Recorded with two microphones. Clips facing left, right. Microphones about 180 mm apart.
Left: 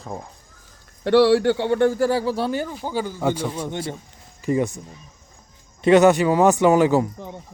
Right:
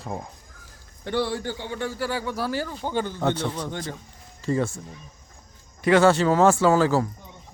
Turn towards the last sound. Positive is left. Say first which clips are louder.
# left 3 dB
turn(degrees=20)  # may be behind; listen again after turning